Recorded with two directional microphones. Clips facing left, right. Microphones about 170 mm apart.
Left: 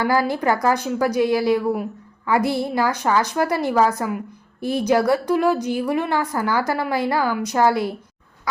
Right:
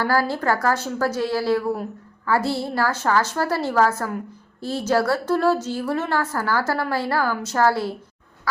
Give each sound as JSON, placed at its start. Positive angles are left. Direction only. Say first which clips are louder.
{"t": 0.0, "sound": "a woman's voice", "louder": "left 2 dB", "side_deg": 15}